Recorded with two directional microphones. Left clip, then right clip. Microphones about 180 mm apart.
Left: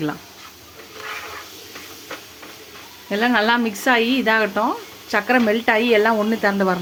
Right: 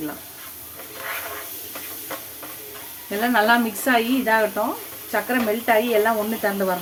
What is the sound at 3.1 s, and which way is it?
A woman's voice, 40° left (ahead or behind).